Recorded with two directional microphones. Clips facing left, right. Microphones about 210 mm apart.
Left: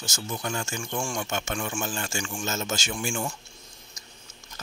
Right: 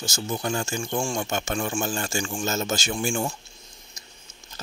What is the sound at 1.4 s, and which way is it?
Speech, 40° right (ahead or behind).